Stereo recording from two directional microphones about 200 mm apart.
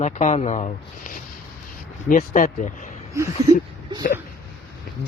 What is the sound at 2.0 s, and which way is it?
Speech, 40° left (ahead or behind).